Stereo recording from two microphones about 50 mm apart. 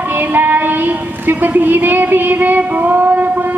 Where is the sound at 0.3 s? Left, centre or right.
Right.